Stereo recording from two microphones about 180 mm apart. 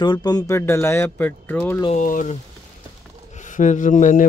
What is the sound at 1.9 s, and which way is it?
Speech, 45° left (ahead or behind).